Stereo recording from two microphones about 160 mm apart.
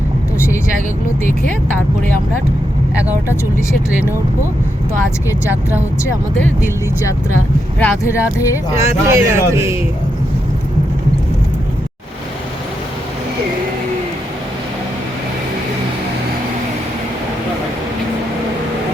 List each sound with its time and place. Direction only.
2.9 s speech: 10° right (ahead or behind)
3.2 s speech: 15° left (ahead or behind)
7.8 s speech: 15° left (ahead or behind)
8.8 s speech: 15° right (ahead or behind)